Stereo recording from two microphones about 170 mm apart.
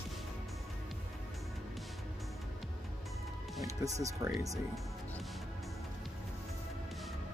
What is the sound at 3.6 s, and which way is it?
Speech, 20° right (ahead or behind).